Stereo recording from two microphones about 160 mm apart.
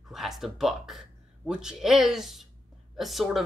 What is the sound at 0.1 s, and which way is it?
Speech, centre (ahead or behind).